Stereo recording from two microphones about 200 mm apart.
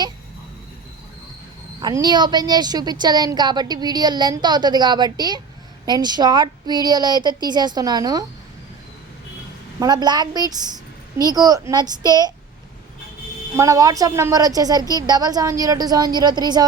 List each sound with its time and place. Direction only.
1.8 s a woman's voice: 20° right (ahead or behind)
9.8 s a woman's voice: 20° right (ahead or behind)
13.6 s a woman's voice: 15° right (ahead or behind)